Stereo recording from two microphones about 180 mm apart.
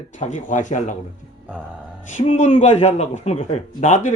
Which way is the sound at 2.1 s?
35° left (ahead or behind).